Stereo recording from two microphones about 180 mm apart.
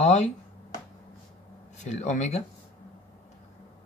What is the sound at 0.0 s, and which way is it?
Speech, 40° left (ahead or behind).